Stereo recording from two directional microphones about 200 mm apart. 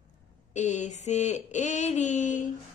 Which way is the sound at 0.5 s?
35° left (ahead or behind).